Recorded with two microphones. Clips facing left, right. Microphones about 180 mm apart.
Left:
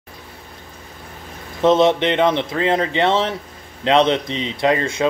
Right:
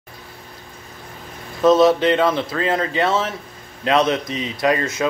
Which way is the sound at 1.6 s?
25° left (ahead or behind).